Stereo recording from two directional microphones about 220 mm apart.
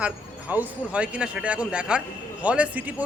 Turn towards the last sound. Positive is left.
turn(degrees=-5)  # may be behind; listen again after turning